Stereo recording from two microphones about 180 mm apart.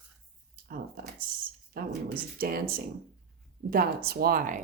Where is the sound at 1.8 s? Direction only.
55° right (ahead or behind).